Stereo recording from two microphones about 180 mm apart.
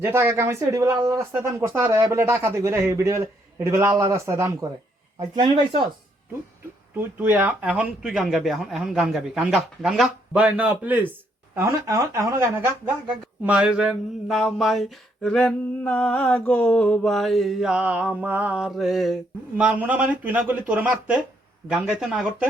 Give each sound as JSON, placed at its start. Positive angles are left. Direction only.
{"t": 0.0, "sound": "speech", "side_deg": -15}
{"t": 6.9, "sound": "speech", "side_deg": -10}